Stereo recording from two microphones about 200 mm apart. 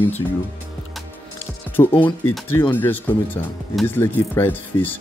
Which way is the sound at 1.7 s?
10° left (ahead or behind).